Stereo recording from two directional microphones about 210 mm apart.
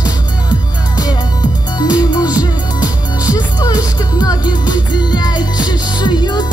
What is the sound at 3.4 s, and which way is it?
Music, 20° left (ahead or behind).